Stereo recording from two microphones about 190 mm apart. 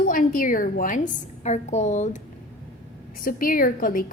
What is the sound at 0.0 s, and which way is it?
A woman's voice, 45° left (ahead or behind).